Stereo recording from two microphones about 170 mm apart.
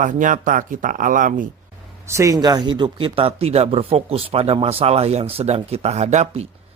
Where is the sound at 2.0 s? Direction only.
15° right (ahead or behind); by 6.4 s 40° right (ahead or behind).